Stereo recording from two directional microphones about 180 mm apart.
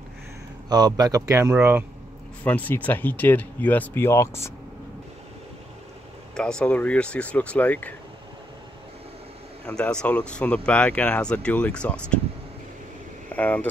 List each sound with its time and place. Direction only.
0.7 s speech: 20° right (ahead or behind)
2.4 s speech: 10° left (ahead or behind)
6.3 s speech: 5° left (ahead or behind)
9.7 s speech: 5° left (ahead or behind)
13.3 s speech: 10° left (ahead or behind)